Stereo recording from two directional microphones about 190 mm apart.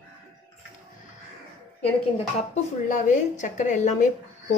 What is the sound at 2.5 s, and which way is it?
Speech, 40° left (ahead or behind).